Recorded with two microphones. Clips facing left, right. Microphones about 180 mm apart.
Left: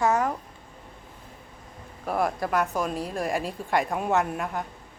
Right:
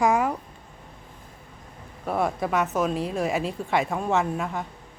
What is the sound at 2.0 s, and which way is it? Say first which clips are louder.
Speech: right 1 dB; centre (ahead or behind).